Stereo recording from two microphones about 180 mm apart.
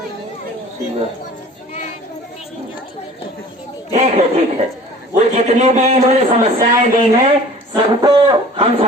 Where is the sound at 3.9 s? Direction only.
40° right (ahead or behind).